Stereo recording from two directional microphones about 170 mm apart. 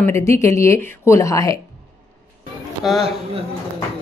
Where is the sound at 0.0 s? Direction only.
15° left (ahead or behind).